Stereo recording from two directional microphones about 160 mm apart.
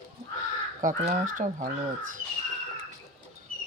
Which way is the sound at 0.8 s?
55° right (ahead or behind).